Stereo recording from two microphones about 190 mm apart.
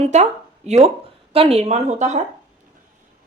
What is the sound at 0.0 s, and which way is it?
Speech, 35° right (ahead or behind).